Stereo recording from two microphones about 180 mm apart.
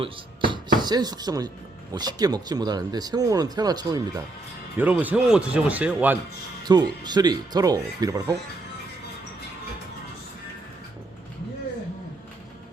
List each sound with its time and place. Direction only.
0.0 s speech: 25° right (ahead or behind)
4.8 s speech: 10° right (ahead or behind)
6.7 s speech: 20° right (ahead or behind)